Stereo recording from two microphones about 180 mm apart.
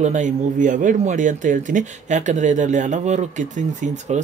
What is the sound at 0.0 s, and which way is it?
Speech, 45° right (ahead or behind).